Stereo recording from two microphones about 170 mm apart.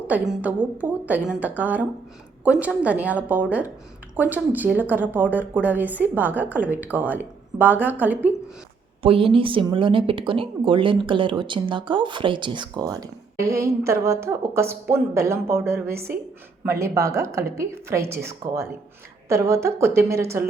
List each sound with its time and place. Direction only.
0.1 s a woman's voice: 10° right (ahead or behind)
9.0 s a woman's voice: 30° right (ahead or behind); by 20.4 s 15° right (ahead or behind)